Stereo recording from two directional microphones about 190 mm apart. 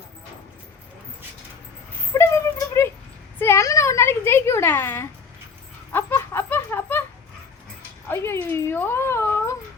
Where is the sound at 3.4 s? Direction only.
15° left (ahead or behind).